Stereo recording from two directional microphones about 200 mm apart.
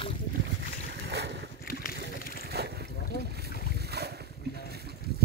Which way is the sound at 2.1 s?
50° left (ahead or behind).